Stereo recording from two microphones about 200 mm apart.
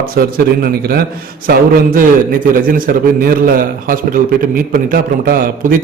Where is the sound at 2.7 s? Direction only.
45° right (ahead or behind).